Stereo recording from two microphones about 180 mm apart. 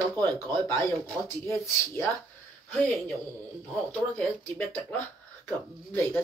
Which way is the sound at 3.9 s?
10° left (ahead or behind).